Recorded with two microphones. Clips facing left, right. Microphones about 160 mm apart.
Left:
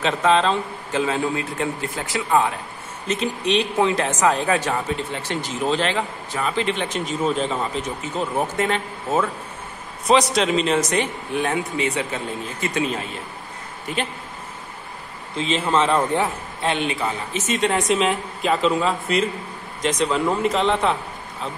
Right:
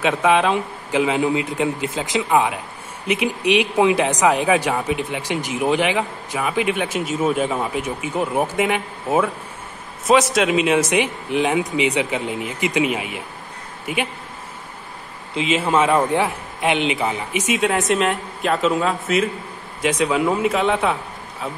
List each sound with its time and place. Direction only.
0.0 s speech: 10° right (ahead or behind)
15.3 s a man's voice: 10° right (ahead or behind)